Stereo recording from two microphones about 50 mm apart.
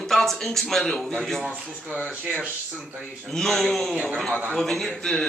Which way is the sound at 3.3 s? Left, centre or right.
Centre.